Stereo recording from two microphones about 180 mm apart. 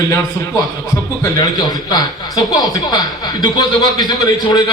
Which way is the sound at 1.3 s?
25° left (ahead or behind).